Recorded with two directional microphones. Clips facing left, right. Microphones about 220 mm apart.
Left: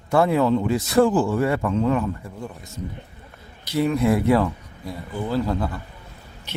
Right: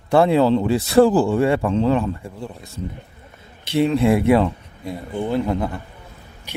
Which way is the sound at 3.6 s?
25° right (ahead or behind).